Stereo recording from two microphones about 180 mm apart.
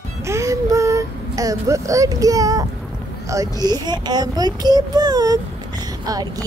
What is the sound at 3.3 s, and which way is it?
A woman's voice, 20° right (ahead or behind).